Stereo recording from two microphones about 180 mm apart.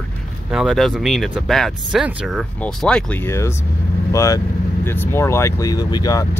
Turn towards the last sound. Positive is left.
turn(degrees=20)  # may be behind; listen again after turning